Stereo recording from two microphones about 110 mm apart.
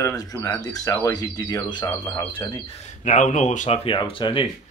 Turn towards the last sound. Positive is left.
turn(degrees=55)  # may be behind; listen again after turning